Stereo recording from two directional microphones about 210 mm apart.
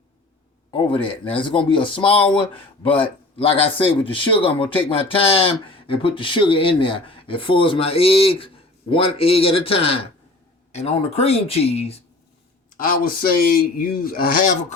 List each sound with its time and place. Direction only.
0.7 s speech: 25° left (ahead or behind)
12.7 s speech: 45° left (ahead or behind)